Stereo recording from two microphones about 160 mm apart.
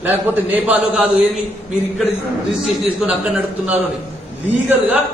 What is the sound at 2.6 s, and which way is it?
A man's voice, centre (ahead or behind).